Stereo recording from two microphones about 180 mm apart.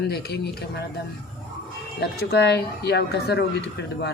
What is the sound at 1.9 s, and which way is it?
A woman's voice, 65° left (ahead or behind).